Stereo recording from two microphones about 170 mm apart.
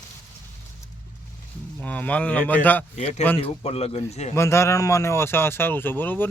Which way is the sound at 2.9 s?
40° left (ahead or behind).